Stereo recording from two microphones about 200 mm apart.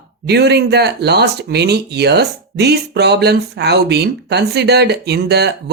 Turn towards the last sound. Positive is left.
turn(degrees=-55)  # may be behind; listen again after turning